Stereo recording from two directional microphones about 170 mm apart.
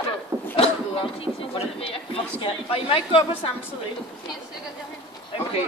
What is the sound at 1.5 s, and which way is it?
Speech, 35° left (ahead or behind).